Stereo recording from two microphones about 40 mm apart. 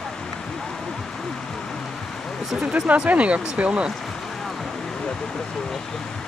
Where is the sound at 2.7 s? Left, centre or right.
Right.